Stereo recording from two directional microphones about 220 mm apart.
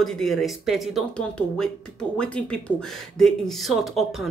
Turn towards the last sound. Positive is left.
turn(degrees=0)  # may be behind; listen again after turning